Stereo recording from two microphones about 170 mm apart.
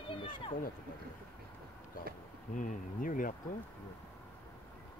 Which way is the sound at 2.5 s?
50° left (ahead or behind).